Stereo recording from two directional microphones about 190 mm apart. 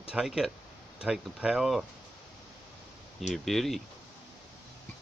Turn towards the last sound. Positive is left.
turn(degrees=0)  # may be behind; listen again after turning